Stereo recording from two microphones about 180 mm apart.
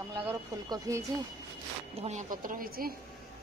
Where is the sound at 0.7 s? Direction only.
20° right (ahead or behind).